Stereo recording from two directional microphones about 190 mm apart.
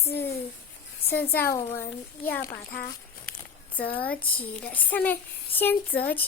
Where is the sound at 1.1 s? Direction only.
10° left (ahead or behind).